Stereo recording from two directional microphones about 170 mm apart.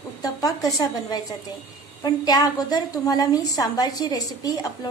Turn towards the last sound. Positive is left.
turn(degrees=20)  # may be behind; listen again after turning